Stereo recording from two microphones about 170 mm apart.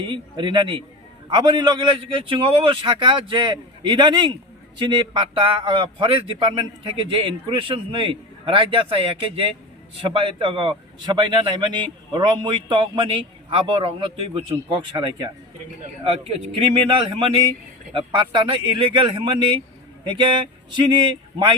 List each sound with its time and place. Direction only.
0.0 s a man's voice: 30° right (ahead or behind)
16.8 s a man's voice: 30° right (ahead or behind)